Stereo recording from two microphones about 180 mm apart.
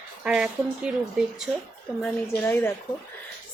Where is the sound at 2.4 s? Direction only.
10° left (ahead or behind).